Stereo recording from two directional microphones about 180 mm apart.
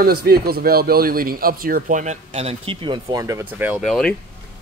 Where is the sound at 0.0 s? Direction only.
60° right (ahead or behind); by 3.8 s 10° right (ahead or behind).